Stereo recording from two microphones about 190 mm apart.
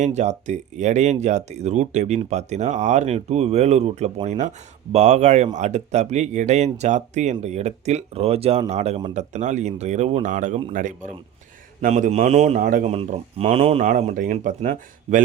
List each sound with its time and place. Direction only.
0.0 s speech: 35° right (ahead or behind)